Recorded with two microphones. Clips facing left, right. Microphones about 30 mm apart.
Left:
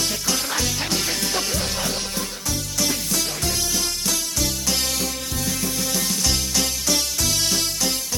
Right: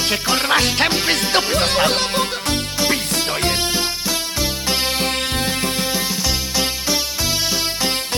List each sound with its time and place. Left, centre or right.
0.4 s music: right
3.2 s music: right
4.9 s music: right
6.2 s music: right